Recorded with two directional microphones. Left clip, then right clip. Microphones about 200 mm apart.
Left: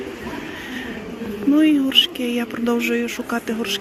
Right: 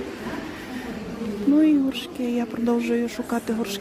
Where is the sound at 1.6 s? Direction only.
10° right (ahead or behind).